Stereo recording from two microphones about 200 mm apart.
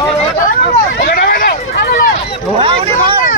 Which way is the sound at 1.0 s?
45° left (ahead or behind).